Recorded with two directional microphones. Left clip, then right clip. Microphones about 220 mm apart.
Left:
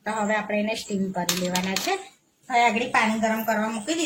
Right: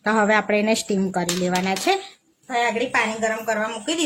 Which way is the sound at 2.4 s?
10° right (ahead or behind).